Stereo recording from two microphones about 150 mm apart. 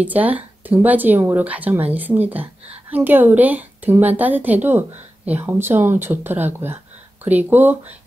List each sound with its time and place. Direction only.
0.0 s a woman's voice: 10° right (ahead or behind)